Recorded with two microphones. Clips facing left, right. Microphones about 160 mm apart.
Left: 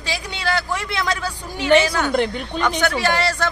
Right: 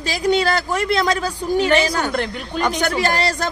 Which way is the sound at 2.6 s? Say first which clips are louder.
Right 1 dB; 40° right (ahead or behind).